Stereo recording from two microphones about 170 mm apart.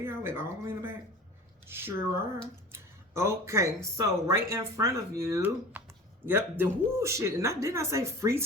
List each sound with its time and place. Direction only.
0.0 s speech: 15° right (ahead or behind)
2.7 s a sound: 15° right (ahead or behind)
3.9 s speech: 20° right (ahead or behind)